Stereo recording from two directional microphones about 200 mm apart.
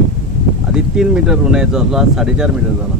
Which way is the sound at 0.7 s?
5° right (ahead or behind).